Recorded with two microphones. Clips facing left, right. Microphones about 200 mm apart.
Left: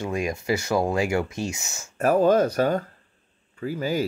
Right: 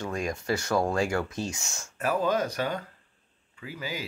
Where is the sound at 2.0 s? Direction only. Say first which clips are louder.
Left 8 dB; 50° left (ahead or behind).